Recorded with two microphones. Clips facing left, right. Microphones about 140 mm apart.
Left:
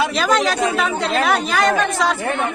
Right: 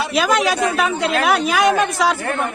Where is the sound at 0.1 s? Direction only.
5° right (ahead or behind).